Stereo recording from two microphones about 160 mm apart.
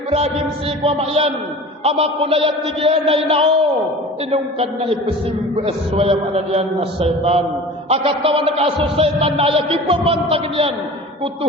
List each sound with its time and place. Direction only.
0.1 s a man's voice: 40° right (ahead or behind)